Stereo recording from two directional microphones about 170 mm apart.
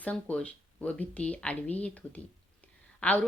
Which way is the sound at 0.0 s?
5° left (ahead or behind).